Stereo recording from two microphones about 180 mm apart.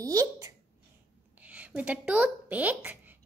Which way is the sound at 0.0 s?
20° right (ahead or behind).